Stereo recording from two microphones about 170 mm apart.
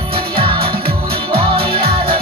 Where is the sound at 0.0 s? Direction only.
30° right (ahead or behind).